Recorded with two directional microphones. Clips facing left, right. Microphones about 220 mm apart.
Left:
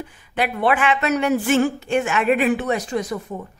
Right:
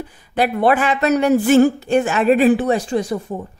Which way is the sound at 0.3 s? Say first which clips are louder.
Right 4 dB; 40° right (ahead or behind).